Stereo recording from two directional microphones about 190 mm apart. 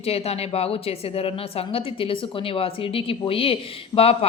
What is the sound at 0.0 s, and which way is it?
Speech, 30° left (ahead or behind).